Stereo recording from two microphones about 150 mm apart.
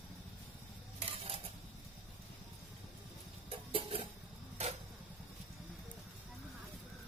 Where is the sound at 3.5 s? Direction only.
40° right (ahead or behind).